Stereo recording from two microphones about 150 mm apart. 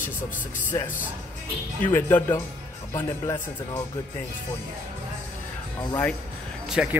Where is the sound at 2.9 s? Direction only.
25° left (ahead or behind).